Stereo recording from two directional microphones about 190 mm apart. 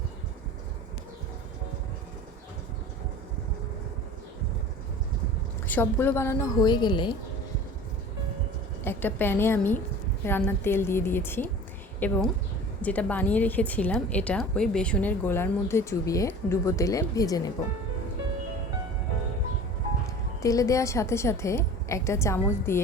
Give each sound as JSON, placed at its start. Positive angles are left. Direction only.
{"t": 5.6, "sound": "a woman's voice", "side_deg": 10}
{"t": 8.8, "sound": "a woman's voice", "side_deg": 10}
{"t": 20.4, "sound": "a woman's voice", "side_deg": 15}